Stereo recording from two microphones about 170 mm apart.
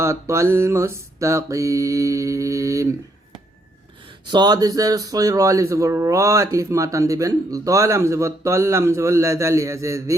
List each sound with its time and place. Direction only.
0.0 s mantra: 15° right (ahead or behind)
4.3 s speech: 25° right (ahead or behind)